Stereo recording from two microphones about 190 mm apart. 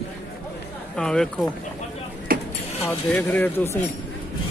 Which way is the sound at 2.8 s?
10° left (ahead or behind).